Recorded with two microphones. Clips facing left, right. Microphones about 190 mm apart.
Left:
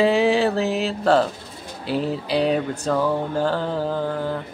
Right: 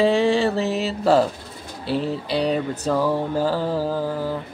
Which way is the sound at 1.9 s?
Centre (ahead or behind).